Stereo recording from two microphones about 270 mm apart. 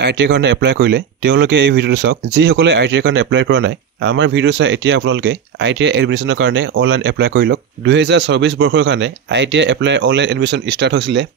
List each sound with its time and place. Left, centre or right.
0.0 s speech: right